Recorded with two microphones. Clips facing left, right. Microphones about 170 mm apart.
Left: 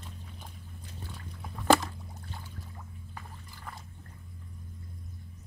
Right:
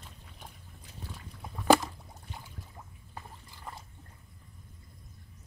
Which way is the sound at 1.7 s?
10° right (ahead or behind).